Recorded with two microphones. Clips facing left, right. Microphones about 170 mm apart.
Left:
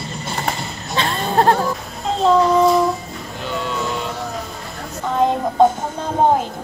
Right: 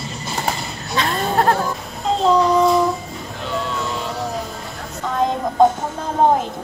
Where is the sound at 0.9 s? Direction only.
30° left (ahead or behind).